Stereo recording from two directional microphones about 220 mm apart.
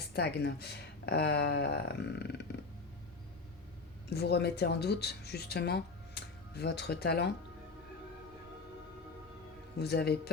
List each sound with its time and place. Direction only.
0.0 s speech: 45° left (ahead or behind)
4.1 s speech: 45° left (ahead or behind)
9.7 s speech: 45° left (ahead or behind)